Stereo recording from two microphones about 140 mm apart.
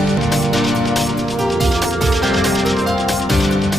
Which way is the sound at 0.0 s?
Centre (ahead or behind).